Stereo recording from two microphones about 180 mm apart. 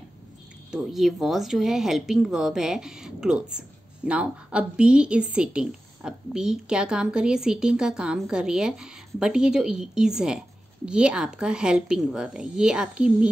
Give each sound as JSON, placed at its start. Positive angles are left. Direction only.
{"t": 0.7, "sound": "speech", "side_deg": 0}